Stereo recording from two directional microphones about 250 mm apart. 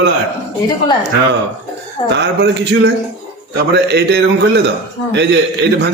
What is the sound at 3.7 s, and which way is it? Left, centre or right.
Speech, right.